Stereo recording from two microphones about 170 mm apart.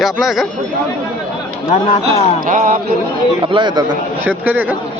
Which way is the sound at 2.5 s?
50° right (ahead or behind).